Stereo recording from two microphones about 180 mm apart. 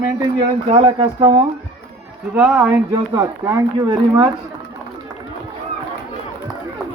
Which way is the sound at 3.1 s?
15° right (ahead or behind).